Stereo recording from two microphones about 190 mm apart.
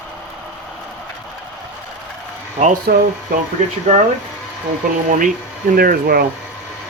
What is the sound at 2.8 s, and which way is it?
Speech, 55° right (ahead or behind).